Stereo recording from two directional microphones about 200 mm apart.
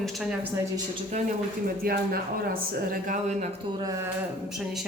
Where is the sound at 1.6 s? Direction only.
45° right (ahead or behind).